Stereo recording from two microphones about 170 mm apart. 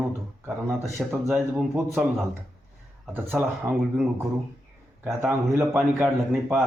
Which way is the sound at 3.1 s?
10° right (ahead or behind).